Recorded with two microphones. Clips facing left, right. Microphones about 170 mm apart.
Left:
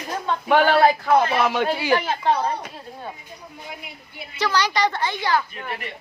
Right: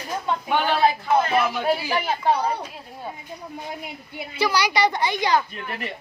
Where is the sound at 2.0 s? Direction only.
10° right (ahead or behind).